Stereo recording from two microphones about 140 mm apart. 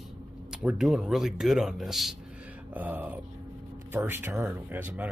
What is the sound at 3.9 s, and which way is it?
Speech, 15° right (ahead or behind).